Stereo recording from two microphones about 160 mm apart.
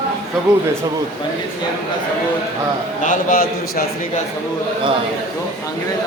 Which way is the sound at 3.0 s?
55° left (ahead or behind).